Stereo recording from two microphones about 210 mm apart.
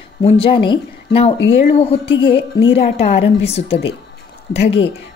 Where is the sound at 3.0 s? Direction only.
30° left (ahead or behind).